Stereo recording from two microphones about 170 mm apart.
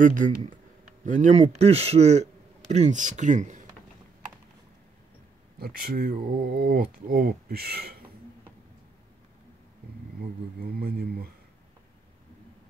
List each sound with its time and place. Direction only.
0.0 s a man's voice: 50° right (ahead or behind)
5.6 s speech: 60° right (ahead or behind)
10.6 s speech: 65° right (ahead or behind)